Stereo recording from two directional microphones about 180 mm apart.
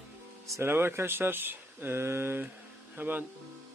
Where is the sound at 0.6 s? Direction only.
10° right (ahead or behind).